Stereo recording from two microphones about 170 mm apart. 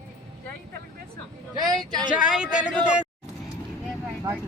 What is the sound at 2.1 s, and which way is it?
Speech, 5° right (ahead or behind).